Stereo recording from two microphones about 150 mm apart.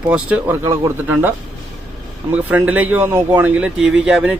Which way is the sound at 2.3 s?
10° right (ahead or behind).